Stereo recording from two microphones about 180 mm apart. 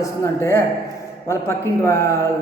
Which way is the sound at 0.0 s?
15° left (ahead or behind).